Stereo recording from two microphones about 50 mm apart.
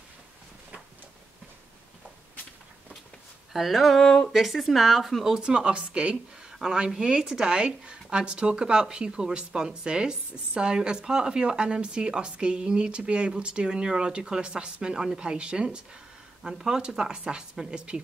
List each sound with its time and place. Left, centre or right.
3.5 s speech: centre
4.0 s speech: centre
4.3 s speech: centre
5.3 s a woman's voice: centre
6.6 s a woman's voice: centre